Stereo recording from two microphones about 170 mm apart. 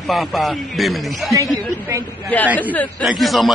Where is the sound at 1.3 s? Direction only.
20° right (ahead or behind).